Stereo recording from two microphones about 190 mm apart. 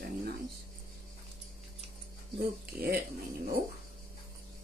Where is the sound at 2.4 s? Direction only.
50° right (ahead or behind).